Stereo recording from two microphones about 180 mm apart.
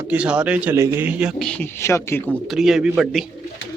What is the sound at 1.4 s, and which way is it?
Speech, 5° left (ahead or behind).